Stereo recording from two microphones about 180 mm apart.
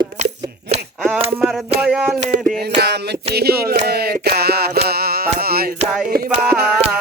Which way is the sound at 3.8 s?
60° right (ahead or behind).